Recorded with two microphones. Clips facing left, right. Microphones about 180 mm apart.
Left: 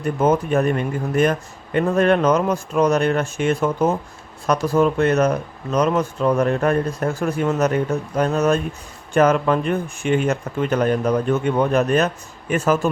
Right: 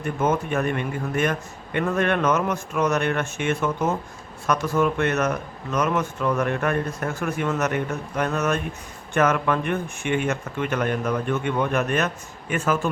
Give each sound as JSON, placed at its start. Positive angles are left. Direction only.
{"t": 0.2, "sound": "speech", "side_deg": 35}